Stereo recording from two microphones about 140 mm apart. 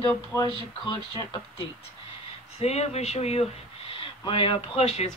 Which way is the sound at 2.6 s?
50° left (ahead or behind).